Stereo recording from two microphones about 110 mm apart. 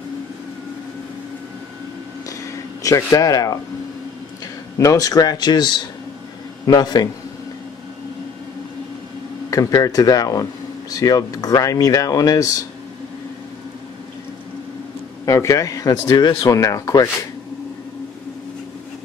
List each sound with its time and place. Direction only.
2.2 s a sound: 30° left (ahead or behind)
4.7 s speech: 30° left (ahead or behind)
9.5 s speech: 35° left (ahead or behind)
15.2 s speech: 30° left (ahead or behind)